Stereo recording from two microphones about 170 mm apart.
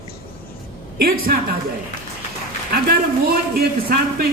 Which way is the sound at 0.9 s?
60° right (ahead or behind).